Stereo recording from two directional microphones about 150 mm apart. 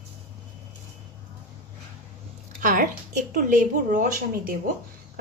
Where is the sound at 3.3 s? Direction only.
60° right (ahead or behind).